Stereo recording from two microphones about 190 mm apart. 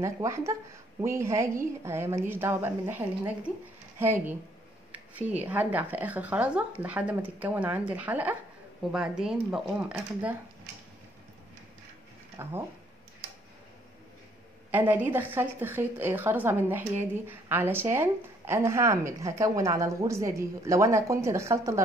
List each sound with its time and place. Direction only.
0.0 s a woman's voice: 15° right (ahead or behind)
5.4 s a woman's voice: 10° right (ahead or behind)
12.4 s a woman's voice: 15° right (ahead or behind)
14.7 s a woman's voice: 10° right (ahead or behind)